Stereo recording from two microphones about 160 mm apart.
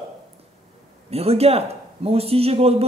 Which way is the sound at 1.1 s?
40° right (ahead or behind).